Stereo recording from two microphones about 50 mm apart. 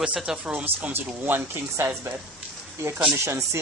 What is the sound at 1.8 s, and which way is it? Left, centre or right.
Speech, right.